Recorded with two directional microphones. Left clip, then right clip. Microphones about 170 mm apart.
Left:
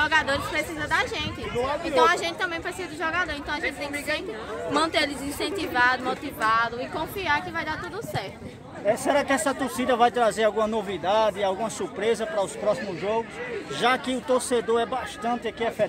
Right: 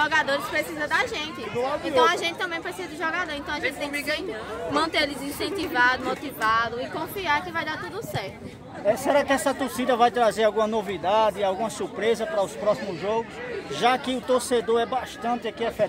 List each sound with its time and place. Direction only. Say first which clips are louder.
0.0 s a woman's voice: even; 15° left (ahead or behind)
4.7 s a woman's voice: even; 20° left (ahead or behind)
8.8 s speech: right 1 dB; centre (ahead or behind)